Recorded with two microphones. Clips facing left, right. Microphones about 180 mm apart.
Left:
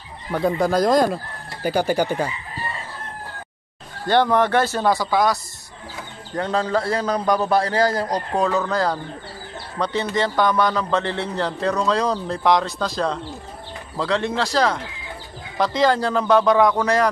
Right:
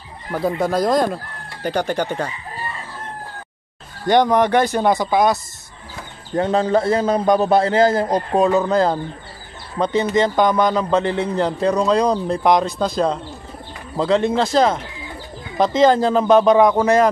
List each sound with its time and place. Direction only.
0.3 s speech: centre (ahead or behind)
4.1 s a man's voice: 15° right (ahead or behind)
10.1 s a man's voice: 20° right (ahead or behind)